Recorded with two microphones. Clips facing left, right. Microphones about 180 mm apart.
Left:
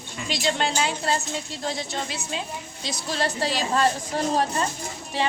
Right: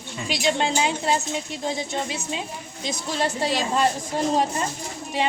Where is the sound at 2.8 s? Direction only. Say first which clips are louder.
Right 2 dB; 20° right (ahead or behind).